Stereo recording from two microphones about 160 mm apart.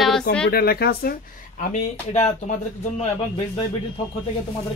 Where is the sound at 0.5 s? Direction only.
75° left (ahead or behind).